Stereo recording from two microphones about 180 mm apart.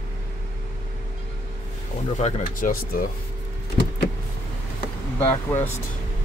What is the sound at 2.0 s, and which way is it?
Speech, 40° left (ahead or behind).